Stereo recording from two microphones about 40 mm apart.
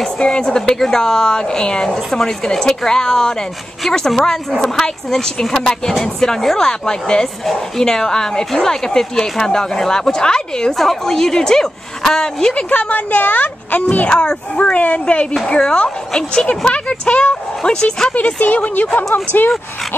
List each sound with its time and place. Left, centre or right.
0.2 s speech: left
4.5 s speech: centre
10.7 s a woman's voice: centre
12.6 s speech: left
14.0 s speech: left
14.5 s speech: left
18.1 s speech: left